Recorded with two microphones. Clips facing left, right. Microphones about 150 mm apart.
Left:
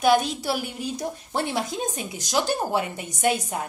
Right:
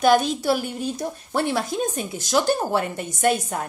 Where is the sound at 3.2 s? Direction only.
50° right (ahead or behind).